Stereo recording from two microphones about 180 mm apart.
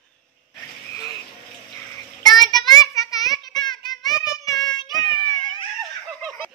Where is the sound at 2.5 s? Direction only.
20° left (ahead or behind).